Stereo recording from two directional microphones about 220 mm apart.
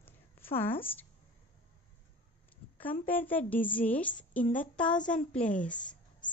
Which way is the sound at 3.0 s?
10° left (ahead or behind).